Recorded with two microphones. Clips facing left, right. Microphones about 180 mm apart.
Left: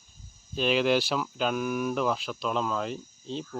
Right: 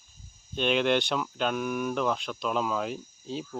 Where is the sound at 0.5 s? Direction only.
Centre (ahead or behind).